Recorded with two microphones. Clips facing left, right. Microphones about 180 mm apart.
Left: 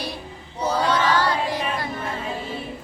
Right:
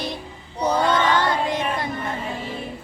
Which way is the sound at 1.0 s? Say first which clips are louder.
Right 1 dB; 20° right (ahead or behind).